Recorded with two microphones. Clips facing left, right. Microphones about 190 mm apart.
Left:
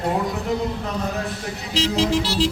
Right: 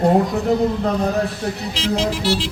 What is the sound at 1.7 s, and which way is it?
Music, 35° left (ahead or behind).